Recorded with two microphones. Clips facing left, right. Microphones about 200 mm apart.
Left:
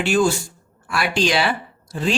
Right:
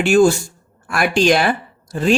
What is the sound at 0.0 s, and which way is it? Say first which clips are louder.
Speech: right 6 dB; 45° right (ahead or behind).